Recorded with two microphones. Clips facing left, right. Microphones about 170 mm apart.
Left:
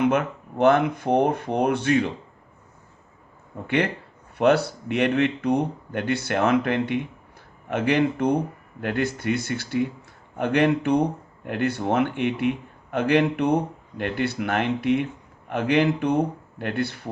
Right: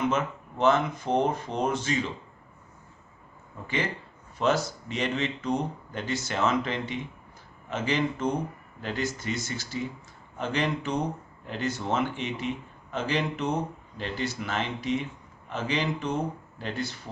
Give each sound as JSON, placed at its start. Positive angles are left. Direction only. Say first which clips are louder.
{"t": 0.0, "sound": "a man's voice", "louder": "left 6 dB", "side_deg": 60}
{"t": 4.4, "sound": "a man's voice", "louder": "left 6 dB", "side_deg": 60}